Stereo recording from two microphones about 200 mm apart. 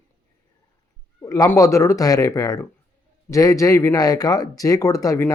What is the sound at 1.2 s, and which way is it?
Speech, 15° left (ahead or behind).